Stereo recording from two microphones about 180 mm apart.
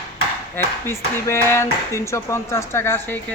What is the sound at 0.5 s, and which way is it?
Speech, 15° left (ahead or behind).